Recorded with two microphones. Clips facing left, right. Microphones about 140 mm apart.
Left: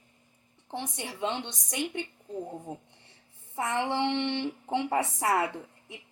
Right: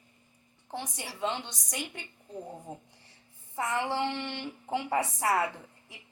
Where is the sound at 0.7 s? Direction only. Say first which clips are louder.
Left 2 dB; 20° left (ahead or behind).